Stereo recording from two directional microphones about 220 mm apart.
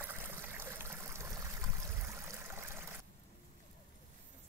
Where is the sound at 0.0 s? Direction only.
10° right (ahead or behind).